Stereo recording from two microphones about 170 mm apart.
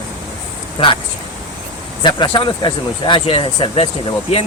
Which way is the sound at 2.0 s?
30° left (ahead or behind).